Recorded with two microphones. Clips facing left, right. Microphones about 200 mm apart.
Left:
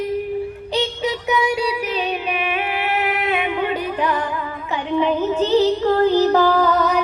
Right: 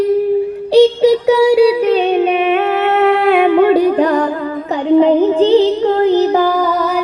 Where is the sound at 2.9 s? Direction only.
60° right (ahead or behind).